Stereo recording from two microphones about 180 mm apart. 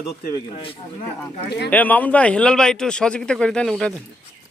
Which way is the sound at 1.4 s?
65° left (ahead or behind).